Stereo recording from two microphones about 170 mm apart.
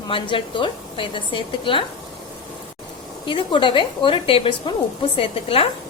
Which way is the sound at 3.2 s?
30° left (ahead or behind).